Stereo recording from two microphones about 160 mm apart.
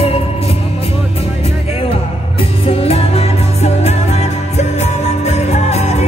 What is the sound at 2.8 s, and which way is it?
Music, 40° left (ahead or behind).